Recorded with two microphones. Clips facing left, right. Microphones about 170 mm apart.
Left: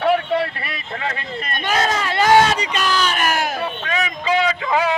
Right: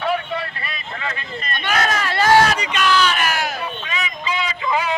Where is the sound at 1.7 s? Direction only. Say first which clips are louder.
Left 1 dB; 25° left (ahead or behind).